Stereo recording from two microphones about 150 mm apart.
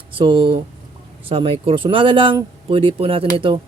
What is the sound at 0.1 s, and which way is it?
Speech, 35° right (ahead or behind).